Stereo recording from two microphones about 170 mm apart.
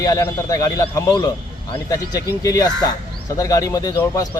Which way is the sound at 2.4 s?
20° left (ahead or behind).